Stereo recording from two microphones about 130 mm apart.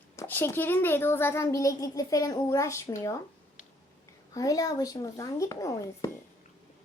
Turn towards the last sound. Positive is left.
turn(degrees=25)  # may be behind; listen again after turning